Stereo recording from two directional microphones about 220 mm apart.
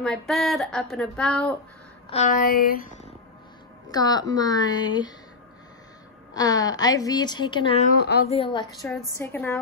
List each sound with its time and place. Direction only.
0.0 s a woman's voice: centre (ahead or behind)
2.0 s a sound: 30° left (ahead or behind)
3.9 s a woman's voice: 20° left (ahead or behind)
6.3 s a woman's voice: 15° left (ahead or behind)
8.0 s a woman's voice: 45° left (ahead or behind)
8.3 s a woman's voice: 25° left (ahead or behind)
8.8 s a woman's voice: 10° left (ahead or behind)